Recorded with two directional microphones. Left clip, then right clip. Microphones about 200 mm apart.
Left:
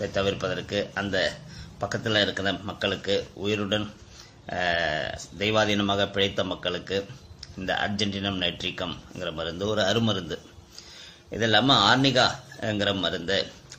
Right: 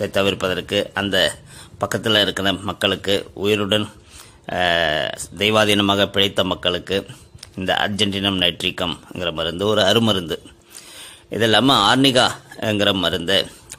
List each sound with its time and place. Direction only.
0.0 s speech: 55° right (ahead or behind)